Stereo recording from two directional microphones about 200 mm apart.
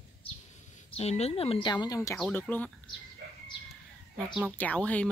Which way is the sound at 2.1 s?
Centre (ahead or behind).